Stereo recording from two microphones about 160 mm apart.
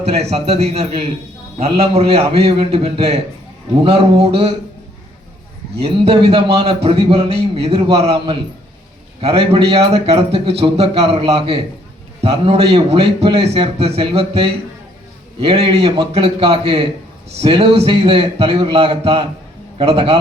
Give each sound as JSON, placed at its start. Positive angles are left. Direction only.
{"t": 0.0, "sound": "a man's voice", "side_deg": -40}
{"t": 5.8, "sound": "a man's voice", "side_deg": -35}